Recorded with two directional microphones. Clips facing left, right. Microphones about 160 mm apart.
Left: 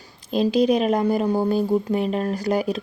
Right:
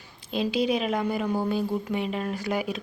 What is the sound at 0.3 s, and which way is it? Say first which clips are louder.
Speech: left 7 dB; 40° left (ahead or behind).